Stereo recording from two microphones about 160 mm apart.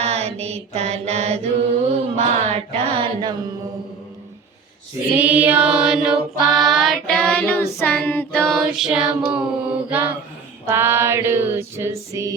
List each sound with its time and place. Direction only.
0.0 s mantra: 40° right (ahead or behind)
2.1 s music: 40° right (ahead or behind)
5.1 s child singing: 10° right (ahead or behind)
10.7 s music: 15° right (ahead or behind)